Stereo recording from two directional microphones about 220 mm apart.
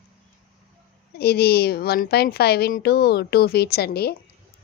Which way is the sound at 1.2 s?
45° left (ahead or behind).